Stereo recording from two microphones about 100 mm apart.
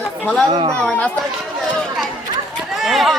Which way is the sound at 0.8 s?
10° left (ahead or behind).